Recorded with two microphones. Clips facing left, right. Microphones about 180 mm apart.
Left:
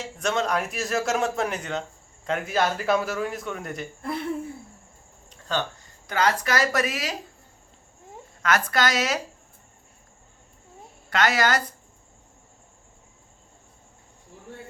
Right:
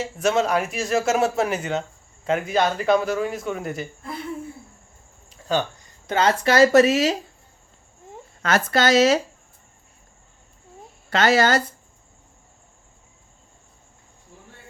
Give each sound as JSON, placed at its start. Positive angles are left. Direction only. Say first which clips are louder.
{"t": 0.0, "sound": "speech", "louder": "right 5 dB", "side_deg": -5}
{"t": 5.3, "sound": "a sound", "louder": "right 5 dB", "side_deg": -10}
{"t": 6.1, "sound": "speech", "louder": "right 4 dB", "side_deg": -25}
{"t": 8.4, "sound": "speech", "louder": "right 3 dB", "side_deg": -30}
{"t": 11.1, "sound": "speech", "louder": "right 4 dB", "side_deg": -30}